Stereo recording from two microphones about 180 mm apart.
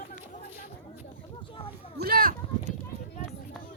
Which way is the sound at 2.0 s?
55° right (ahead or behind).